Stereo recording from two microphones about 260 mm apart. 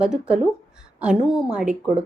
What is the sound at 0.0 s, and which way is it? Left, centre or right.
A woman's voice, centre.